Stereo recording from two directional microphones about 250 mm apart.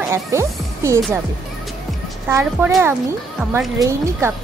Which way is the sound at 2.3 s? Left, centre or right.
Centre.